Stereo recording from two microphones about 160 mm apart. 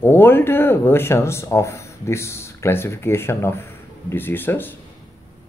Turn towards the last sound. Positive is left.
turn(degrees=10)  # may be behind; listen again after turning